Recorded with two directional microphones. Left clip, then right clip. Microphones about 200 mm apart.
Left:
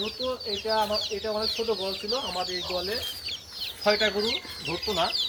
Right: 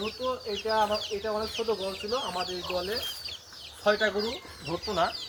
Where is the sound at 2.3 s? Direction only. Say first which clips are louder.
Left 2 dB; 20° left (ahead or behind).